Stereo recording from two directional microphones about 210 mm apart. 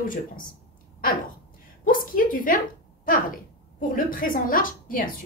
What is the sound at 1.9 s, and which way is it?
Speech, 40° left (ahead or behind).